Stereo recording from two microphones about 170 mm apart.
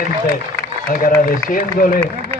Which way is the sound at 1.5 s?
55° left (ahead or behind).